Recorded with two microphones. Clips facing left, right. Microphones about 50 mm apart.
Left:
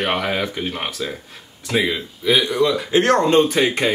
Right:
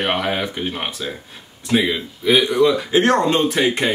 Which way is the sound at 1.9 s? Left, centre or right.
Centre.